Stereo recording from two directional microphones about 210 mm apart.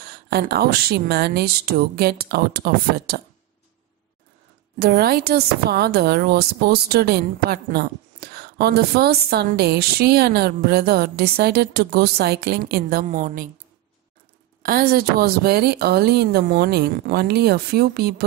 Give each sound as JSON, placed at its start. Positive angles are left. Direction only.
{"t": 0.0, "sound": "a woman's voice", "side_deg": -50}
{"t": 4.7, "sound": "a woman's voice", "side_deg": -45}
{"t": 14.6, "sound": "a woman's voice", "side_deg": -45}